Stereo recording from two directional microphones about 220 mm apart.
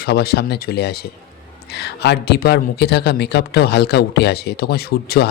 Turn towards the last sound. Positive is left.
turn(degrees=45)  # may be behind; listen again after turning